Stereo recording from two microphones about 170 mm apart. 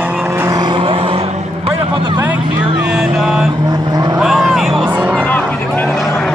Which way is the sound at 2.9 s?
5° right (ahead or behind).